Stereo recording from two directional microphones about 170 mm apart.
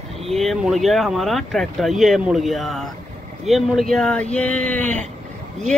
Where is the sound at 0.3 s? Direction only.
Centre (ahead or behind).